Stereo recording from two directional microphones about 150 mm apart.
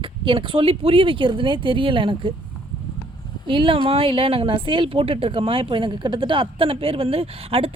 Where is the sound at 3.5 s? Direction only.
35° right (ahead or behind).